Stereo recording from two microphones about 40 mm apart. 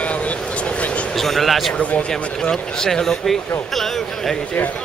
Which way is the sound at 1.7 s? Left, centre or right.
Left.